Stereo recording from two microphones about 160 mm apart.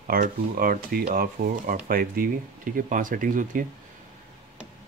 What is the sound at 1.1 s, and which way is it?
Speech, 60° right (ahead or behind).